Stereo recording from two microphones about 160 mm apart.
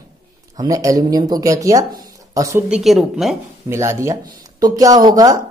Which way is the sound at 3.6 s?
15° right (ahead or behind).